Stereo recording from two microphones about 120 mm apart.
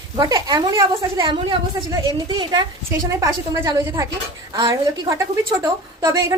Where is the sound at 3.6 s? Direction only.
25° right (ahead or behind).